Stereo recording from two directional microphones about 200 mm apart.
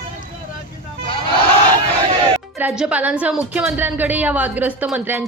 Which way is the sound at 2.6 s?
5° right (ahead or behind).